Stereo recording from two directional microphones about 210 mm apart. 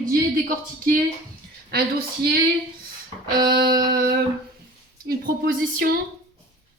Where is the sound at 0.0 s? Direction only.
40° right (ahead or behind).